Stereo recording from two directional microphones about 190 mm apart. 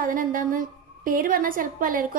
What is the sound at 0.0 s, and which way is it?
A woman's voice, 50° right (ahead or behind).